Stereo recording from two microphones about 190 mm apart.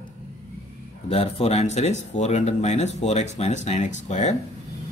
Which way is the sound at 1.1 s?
30° left (ahead or behind).